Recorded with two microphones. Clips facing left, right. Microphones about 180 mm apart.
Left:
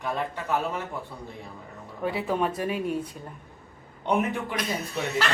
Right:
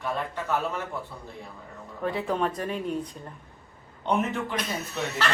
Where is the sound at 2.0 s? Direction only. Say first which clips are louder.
Left 1 dB; 10° left (ahead or behind).